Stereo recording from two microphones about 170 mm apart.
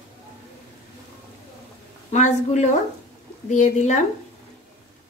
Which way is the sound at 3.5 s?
45° left (ahead or behind).